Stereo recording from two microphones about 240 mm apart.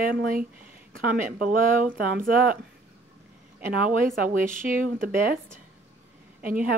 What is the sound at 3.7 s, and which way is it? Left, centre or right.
Speech, right.